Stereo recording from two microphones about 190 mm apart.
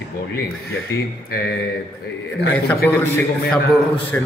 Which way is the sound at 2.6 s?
10° left (ahead or behind).